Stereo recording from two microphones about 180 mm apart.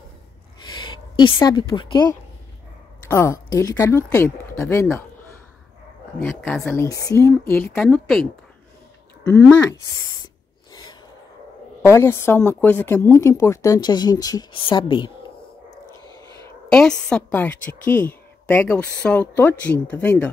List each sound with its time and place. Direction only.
0.7 s a woman's voice: 25° left (ahead or behind)
6.1 s a woman's voice: 5° left (ahead or behind)
6.8 s a woman's voice: 20° left (ahead or behind)
11.8 s a woman's voice: 15° left (ahead or behind)
16.4 s a woman's voice: 5° left (ahead or behind)